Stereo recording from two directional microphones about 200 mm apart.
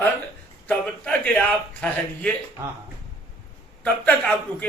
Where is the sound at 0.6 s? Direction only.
5° left (ahead or behind).